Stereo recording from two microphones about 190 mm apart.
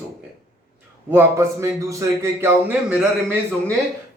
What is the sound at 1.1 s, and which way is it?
A man's voice, 15° right (ahead or behind).